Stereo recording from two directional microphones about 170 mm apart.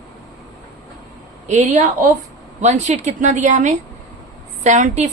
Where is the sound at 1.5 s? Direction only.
45° right (ahead or behind).